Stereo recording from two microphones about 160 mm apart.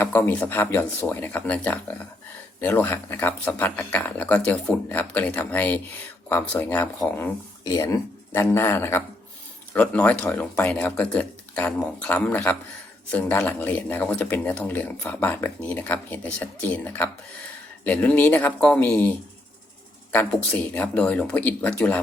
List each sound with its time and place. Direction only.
0.0 s speech: 10° left (ahead or behind)
7.6 s speech: 25° left (ahead or behind)
20.1 s speech: 10° left (ahead or behind)